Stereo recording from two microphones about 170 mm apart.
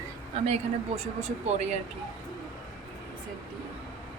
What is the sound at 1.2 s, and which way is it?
Speech, 40° right (ahead or behind).